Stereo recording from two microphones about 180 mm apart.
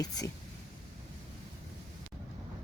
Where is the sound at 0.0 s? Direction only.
20° left (ahead or behind).